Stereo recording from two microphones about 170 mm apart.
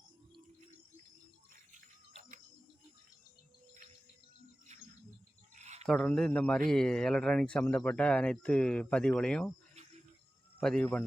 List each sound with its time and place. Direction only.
4.7 s cricket: 45° right (ahead or behind)
5.5 s a sound: 45° right (ahead or behind)
5.9 s speech: 5° left (ahead or behind)
10.6 s speech: 5° left (ahead or behind)